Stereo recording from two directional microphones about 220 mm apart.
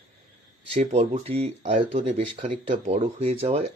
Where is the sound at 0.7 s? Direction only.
30° right (ahead or behind).